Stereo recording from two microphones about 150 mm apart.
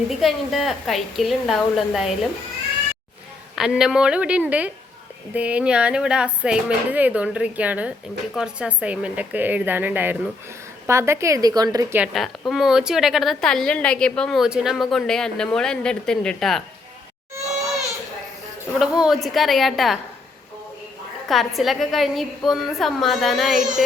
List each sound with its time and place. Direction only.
0.1 s a woman's voice: centre (ahead or behind)
3.5 s a woman's voice: 5° right (ahead or behind); by 11.9 s 25° right (ahead or behind)
11.9 s a woman's voice: centre (ahead or behind)
18.8 s a woman's voice: 5° right (ahead or behind)
21.2 s a woman's voice: centre (ahead or behind)